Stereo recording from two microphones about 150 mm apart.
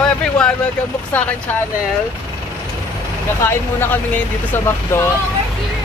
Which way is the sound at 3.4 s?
15° left (ahead or behind).